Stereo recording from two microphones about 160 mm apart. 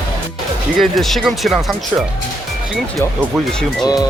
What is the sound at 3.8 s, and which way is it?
Speech, 25° left (ahead or behind).